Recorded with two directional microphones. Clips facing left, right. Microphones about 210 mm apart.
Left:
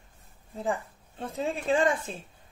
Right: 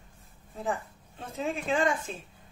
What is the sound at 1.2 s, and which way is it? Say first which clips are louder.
Speech: left 2 dB; 30° left (ahead or behind).